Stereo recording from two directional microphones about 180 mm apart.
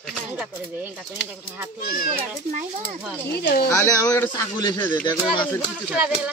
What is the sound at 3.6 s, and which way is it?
A man's voice, 15° left (ahead or behind).